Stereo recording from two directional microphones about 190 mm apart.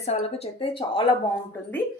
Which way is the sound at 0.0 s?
35° left (ahead or behind).